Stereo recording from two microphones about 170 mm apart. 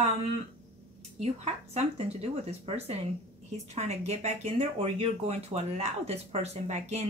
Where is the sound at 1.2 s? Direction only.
40° right (ahead or behind).